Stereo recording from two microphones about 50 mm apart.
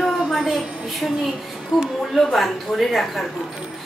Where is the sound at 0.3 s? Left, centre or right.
Centre.